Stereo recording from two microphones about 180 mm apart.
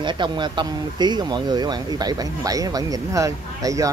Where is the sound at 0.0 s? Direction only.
25° right (ahead or behind).